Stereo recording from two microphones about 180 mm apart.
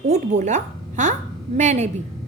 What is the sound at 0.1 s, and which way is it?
A woman's voice, 40° right (ahead or behind).